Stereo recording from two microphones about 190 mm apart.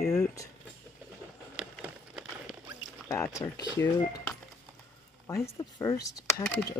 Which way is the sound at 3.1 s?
15° left (ahead or behind).